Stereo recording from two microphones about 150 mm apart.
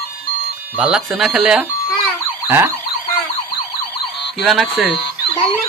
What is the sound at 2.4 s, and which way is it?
Emergency vehicle, 15° right (ahead or behind).